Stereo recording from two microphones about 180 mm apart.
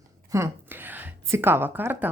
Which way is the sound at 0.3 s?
15° right (ahead or behind).